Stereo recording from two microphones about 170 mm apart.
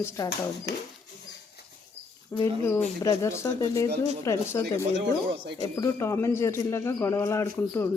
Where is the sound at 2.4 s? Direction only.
15° left (ahead or behind).